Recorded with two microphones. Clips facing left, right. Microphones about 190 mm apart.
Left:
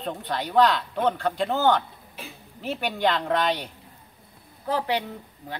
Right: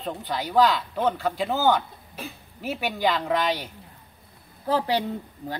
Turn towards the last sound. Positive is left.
turn(degrees=-35)  # may be behind; listen again after turning